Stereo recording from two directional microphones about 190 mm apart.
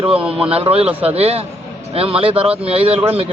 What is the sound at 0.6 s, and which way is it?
Speech, 30° right (ahead or behind).